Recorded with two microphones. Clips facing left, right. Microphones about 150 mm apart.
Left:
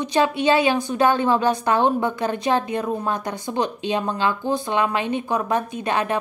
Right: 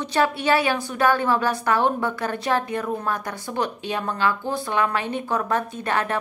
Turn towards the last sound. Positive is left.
turn(degrees=15)  # may be behind; listen again after turning